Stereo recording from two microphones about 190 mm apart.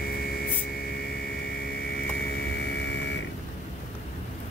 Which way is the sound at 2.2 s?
65° left (ahead or behind).